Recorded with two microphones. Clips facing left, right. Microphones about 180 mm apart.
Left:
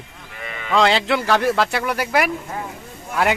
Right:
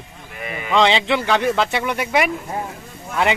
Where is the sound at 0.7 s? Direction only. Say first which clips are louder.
Even; centre (ahead or behind).